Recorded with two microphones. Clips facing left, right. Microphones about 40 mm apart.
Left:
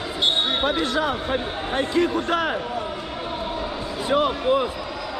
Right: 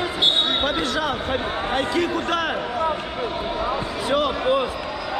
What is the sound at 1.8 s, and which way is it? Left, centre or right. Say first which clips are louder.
Speech: left 4 dB; right.